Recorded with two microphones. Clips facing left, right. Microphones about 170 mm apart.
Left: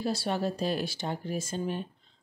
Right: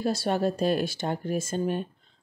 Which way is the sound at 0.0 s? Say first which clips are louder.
Right 4 dB; 50° right (ahead or behind).